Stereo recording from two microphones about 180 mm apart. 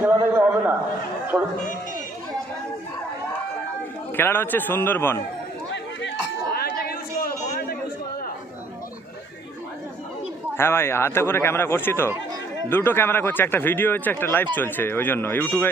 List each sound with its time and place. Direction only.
0.0 s a man's voice: 10° right (ahead or behind)
4.2 s speech: 10° left (ahead or behind)
6.5 s chatter: 60° left (ahead or behind)
10.6 s speech: 15° left (ahead or behind)